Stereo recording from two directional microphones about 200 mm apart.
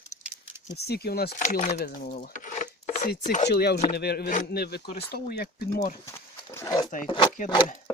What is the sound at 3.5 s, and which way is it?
Speech, 55° left (ahead or behind).